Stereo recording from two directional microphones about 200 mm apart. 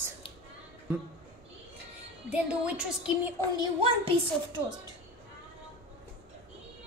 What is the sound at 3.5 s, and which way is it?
Speech, 25° right (ahead or behind).